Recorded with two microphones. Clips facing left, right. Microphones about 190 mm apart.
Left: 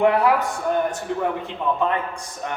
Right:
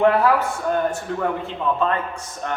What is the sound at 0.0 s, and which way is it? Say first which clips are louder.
A man's voice: right 1 dB; 15° left (ahead or behind).